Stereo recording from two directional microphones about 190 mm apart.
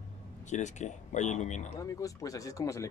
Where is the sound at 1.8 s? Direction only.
15° left (ahead or behind).